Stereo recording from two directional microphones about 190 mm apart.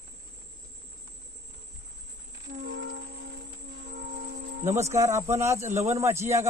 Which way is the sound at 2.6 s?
85° right.